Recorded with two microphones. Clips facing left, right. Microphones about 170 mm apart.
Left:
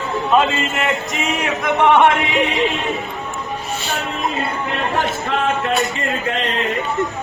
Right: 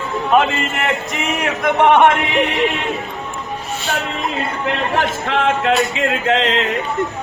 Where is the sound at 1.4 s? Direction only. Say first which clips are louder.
Right 3 dB; 55° right (ahead or behind).